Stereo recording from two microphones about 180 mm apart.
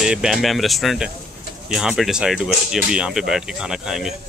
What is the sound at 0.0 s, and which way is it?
A man's voice, 5° right (ahead or behind).